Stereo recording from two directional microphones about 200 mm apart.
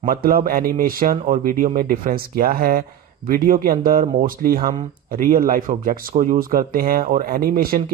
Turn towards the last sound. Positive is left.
turn(degrees=-50)  # may be behind; listen again after turning